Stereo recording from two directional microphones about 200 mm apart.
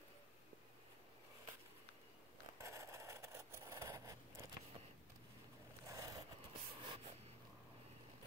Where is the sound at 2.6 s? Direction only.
15° right (ahead or behind).